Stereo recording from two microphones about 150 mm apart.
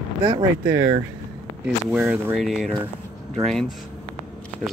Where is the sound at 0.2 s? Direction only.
15° right (ahead or behind).